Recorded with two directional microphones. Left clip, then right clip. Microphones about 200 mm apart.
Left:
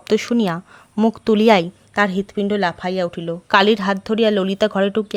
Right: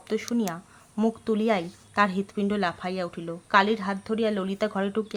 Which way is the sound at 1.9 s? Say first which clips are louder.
Left 6 dB; 30° left (ahead or behind).